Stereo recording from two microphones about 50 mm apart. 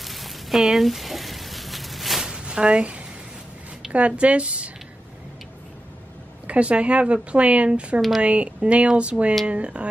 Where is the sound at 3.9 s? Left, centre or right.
Right.